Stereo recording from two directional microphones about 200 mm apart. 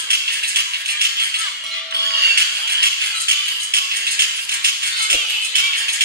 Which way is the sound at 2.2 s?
50° right (ahead or behind).